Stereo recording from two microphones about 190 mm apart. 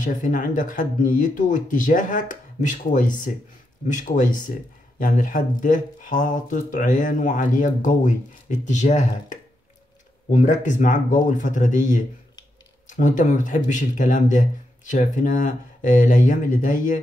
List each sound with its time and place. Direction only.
0.0 s speech: 45° left (ahead or behind)